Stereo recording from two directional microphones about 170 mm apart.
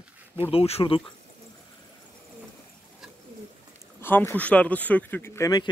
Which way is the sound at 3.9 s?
15° left (ahead or behind).